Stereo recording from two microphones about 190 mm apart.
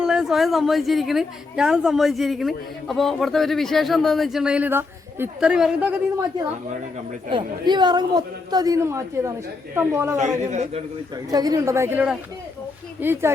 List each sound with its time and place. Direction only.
0.0 s a woman's voice: 5° right (ahead or behind)
7.3 s a man's voice: 25° right (ahead or behind)
10.2 s a man's voice: 40° right (ahead or behind)
11.3 s a woman's voice: 20° right (ahead or behind)